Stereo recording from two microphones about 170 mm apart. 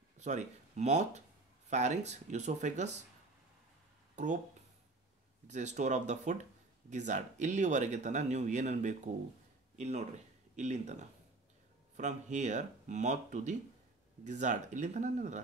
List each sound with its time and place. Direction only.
0.2 s speech: 40° right (ahead or behind)
4.1 s a sound: 45° right (ahead or behind)
5.5 s speech: 45° right (ahead or behind)